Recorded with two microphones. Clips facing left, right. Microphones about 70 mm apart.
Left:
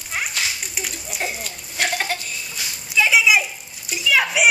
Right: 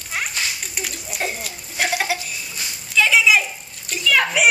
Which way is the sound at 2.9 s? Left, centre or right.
Centre.